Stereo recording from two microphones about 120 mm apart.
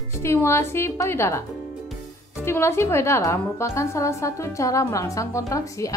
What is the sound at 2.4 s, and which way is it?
A woman's voice, 20° left (ahead or behind).